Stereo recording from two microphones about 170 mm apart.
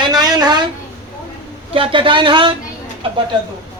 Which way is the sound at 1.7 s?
30° right (ahead or behind).